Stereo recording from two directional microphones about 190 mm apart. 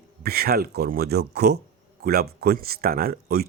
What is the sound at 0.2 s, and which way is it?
Speech, 55° right (ahead or behind).